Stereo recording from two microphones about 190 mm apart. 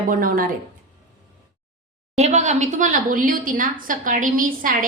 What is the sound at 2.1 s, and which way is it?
A woman's voice, 35° right (ahead or behind).